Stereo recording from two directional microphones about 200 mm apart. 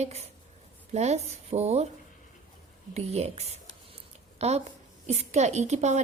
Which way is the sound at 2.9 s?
30° right (ahead or behind).